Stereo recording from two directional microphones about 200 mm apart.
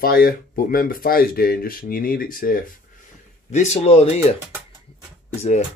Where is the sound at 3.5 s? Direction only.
35° left (ahead or behind).